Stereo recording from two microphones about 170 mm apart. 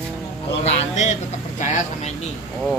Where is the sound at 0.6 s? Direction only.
40° left (ahead or behind).